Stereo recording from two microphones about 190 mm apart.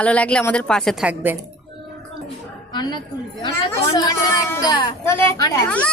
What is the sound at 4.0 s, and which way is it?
A woman's voice, 20° left (ahead or behind).